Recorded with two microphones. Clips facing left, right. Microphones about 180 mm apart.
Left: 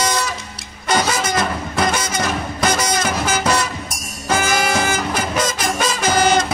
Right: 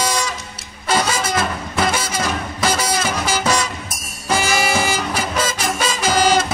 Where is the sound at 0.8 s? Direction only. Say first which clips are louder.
Left 1 dB; 5° right (ahead or behind).